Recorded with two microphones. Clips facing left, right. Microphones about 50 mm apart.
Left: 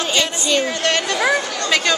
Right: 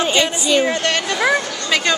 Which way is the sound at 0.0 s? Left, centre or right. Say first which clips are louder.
Right 3 dB; centre.